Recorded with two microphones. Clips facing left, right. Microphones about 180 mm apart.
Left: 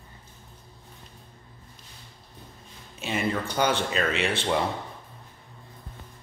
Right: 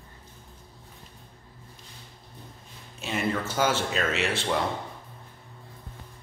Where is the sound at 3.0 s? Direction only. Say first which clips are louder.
Left 1 dB; centre (ahead or behind).